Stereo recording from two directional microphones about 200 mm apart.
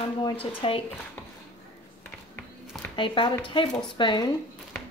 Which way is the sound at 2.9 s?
25° left (ahead or behind).